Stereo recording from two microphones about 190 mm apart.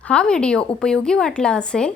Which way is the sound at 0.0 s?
5° left (ahead or behind).